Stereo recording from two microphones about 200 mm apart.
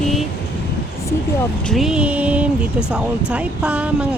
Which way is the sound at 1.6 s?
Centre (ahead or behind).